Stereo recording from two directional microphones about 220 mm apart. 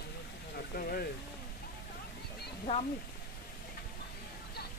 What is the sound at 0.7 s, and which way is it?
Speech, 40° left (ahead or behind).